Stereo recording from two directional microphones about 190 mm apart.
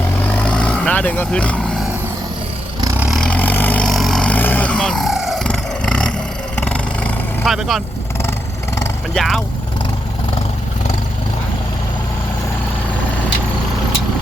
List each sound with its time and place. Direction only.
0.3 s vehicle: 5° left (ahead or behind)
2.8 s vehicle: 15° right (ahead or behind)
3.1 s vehicle: 5° left (ahead or behind)
8.2 s vehicle: 15° left (ahead or behind)
9.1 s speech: centre (ahead or behind)